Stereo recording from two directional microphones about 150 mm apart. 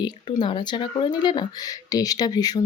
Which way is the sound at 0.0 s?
30° left (ahead or behind).